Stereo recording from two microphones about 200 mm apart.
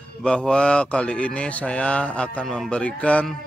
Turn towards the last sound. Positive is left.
turn(degrees=5)  # may be behind; listen again after turning